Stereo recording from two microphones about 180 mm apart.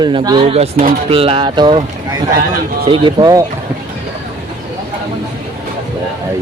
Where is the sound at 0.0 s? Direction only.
25° right (ahead or behind).